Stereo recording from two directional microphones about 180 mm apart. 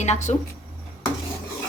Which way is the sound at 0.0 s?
40° left (ahead or behind).